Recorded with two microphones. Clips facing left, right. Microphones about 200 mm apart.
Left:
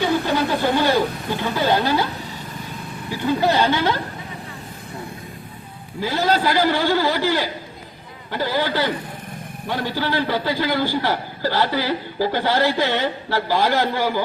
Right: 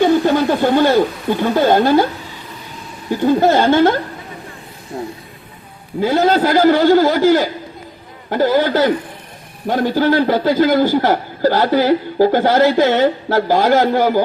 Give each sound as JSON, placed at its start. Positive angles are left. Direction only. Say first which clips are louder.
{"t": 0.0, "sound": "speech", "louder": "right 7 dB", "side_deg": -55}
{"t": 3.1, "sound": "a man's voice", "louder": "right 7 dB", "side_deg": -50}
{"t": 6.0, "sound": "a man's voice", "louder": "right 7 dB", "side_deg": -55}